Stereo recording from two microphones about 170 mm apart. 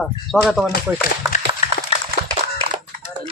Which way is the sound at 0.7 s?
60° left (ahead or behind).